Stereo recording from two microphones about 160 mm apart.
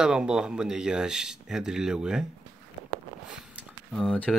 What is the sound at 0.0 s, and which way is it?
Speech, 5° right (ahead or behind).